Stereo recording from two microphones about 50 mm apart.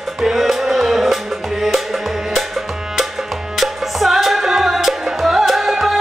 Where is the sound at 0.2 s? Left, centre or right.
Centre.